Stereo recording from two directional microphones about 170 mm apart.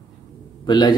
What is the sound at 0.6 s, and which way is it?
Speech, 25° left (ahead or behind).